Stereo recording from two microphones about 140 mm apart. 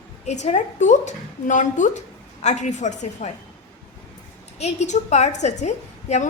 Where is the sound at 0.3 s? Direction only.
55° left (ahead or behind).